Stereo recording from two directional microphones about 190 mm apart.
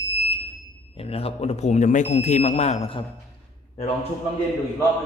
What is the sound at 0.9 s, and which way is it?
Speech, 30° left (ahead or behind).